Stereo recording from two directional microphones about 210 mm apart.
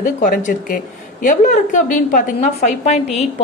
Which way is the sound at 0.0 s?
35° left (ahead or behind).